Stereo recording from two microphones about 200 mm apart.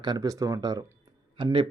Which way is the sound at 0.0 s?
20° right (ahead or behind).